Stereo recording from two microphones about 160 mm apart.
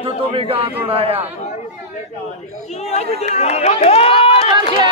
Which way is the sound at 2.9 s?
40° left (ahead or behind).